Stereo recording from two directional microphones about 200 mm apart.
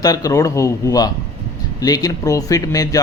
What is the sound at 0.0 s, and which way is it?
A man's voice, 20° left (ahead or behind).